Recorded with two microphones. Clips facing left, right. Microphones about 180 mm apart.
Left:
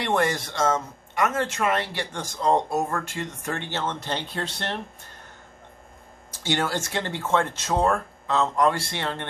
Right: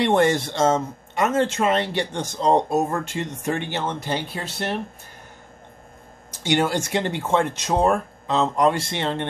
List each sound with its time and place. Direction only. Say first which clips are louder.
0.0 s speech: right 6 dB; 25° right (ahead or behind); by 4.7 s 10° right (ahead or behind)
6.3 s speech: right 5 dB; 15° right (ahead or behind)